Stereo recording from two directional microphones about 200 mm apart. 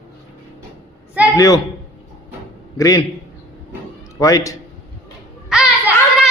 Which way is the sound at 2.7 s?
15° left (ahead or behind).